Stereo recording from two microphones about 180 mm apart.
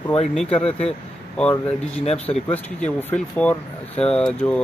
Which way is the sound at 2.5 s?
5° left (ahead or behind).